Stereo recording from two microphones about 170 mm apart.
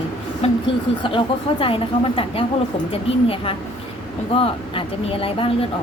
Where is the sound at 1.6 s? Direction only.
30° left (ahead or behind).